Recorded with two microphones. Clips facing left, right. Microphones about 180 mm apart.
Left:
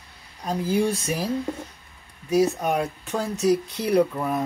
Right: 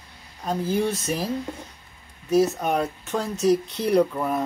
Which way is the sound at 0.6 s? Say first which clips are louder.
Left 2 dB; 10° left (ahead or behind).